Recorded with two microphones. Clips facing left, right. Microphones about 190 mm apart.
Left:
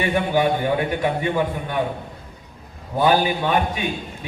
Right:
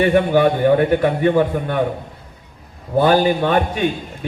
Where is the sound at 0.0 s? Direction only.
50° right (ahead or behind).